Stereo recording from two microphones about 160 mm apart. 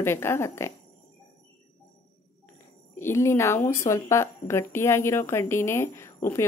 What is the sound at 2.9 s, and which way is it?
A woman's voice, 15° left (ahead or behind).